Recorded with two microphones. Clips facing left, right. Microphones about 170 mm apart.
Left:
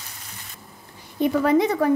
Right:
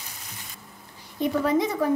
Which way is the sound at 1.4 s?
65° left (ahead or behind).